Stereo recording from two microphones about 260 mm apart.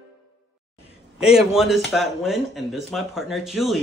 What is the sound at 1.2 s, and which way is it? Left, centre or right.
Speech, centre.